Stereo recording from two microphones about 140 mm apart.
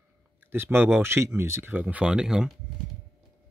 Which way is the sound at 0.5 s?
15° right (ahead or behind).